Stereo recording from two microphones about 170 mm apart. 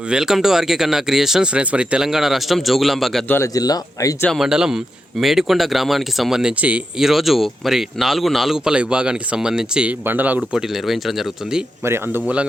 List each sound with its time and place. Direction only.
0.1 s speech: 5° right (ahead or behind)
3.2 s speech: 15° left (ahead or behind)
4.2 s speech: centre (ahead or behind)